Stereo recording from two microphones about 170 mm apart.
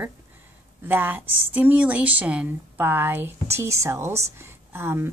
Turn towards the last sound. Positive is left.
turn(degrees=-15)  # may be behind; listen again after turning